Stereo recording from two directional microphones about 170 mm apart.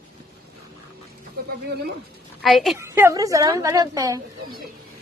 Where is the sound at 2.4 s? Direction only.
Centre (ahead or behind).